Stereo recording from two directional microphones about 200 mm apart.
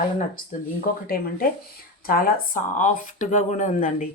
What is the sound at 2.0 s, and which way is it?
Speech, 45° left (ahead or behind).